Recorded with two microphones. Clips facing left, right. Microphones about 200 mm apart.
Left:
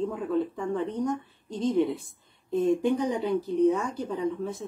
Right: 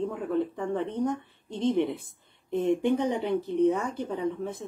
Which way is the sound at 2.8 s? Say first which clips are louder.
Even; 60° right (ahead or behind).